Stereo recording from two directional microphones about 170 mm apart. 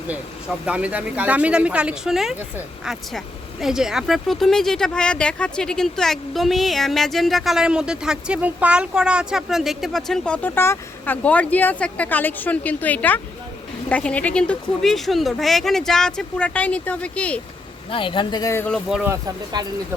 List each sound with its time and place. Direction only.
0.6 s speech: 5° right (ahead or behind)
17.9 s speech: 30° left (ahead or behind)
18.7 s speech: centre (ahead or behind)
19.0 s speech: 20° right (ahead or behind)